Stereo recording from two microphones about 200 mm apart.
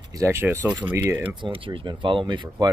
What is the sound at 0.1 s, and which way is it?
Speech, 15° right (ahead or behind).